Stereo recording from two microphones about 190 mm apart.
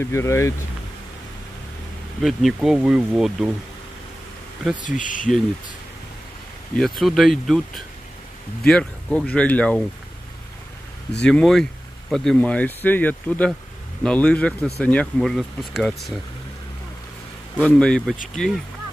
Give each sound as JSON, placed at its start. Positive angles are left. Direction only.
{"t": 0.0, "sound": "speech", "side_deg": 15}
{"t": 2.2, "sound": "speech", "side_deg": 0}
{"t": 4.7, "sound": "speech", "side_deg": 40}
{"t": 6.8, "sound": "speech", "side_deg": 0}
{"t": 11.1, "sound": "speech", "side_deg": 5}
{"t": 17.6, "sound": "speech", "side_deg": 5}